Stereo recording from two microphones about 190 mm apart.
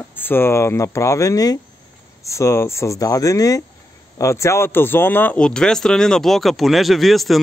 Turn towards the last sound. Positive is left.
turn(degrees=0)  # may be behind; listen again after turning